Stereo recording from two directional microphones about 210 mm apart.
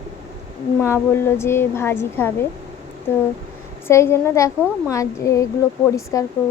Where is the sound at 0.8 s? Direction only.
10° left (ahead or behind).